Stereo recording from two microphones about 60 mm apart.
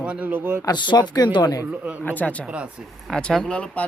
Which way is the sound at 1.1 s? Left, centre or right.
Left.